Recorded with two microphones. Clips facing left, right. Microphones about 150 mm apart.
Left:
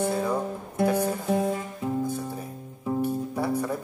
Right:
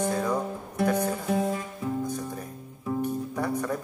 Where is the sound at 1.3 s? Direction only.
25° left (ahead or behind).